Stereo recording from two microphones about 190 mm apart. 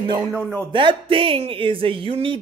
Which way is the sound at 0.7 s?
25° right (ahead or behind).